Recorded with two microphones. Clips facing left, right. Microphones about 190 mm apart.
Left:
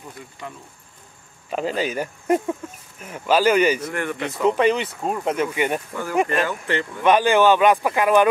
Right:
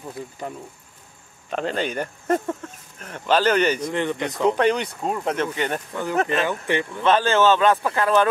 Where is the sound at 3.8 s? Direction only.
20° right (ahead or behind).